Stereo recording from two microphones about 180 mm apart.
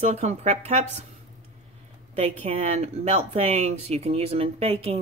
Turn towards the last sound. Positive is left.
turn(degrees=-35)  # may be behind; listen again after turning